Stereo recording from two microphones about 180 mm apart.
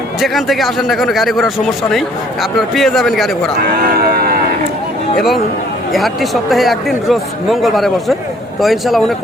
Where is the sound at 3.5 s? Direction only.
55° right (ahead or behind).